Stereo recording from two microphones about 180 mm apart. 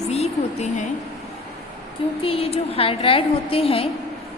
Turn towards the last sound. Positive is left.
turn(degrees=30)  # may be behind; listen again after turning